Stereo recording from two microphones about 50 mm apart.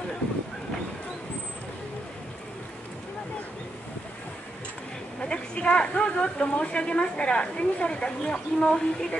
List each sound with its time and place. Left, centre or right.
5.2 s a woman's voice: centre